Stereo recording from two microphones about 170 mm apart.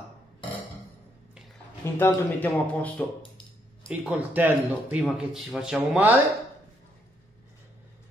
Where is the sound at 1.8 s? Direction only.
15° left (ahead or behind).